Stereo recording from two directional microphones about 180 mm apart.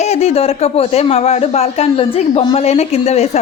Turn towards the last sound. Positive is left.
turn(degrees=35)  # may be behind; listen again after turning